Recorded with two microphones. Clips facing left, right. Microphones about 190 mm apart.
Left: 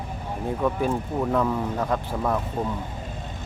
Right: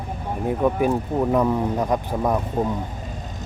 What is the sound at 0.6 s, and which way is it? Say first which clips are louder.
Speech: right 4 dB; 15° right (ahead or behind).